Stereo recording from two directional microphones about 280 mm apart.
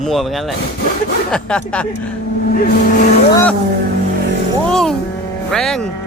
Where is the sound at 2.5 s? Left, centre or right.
Left.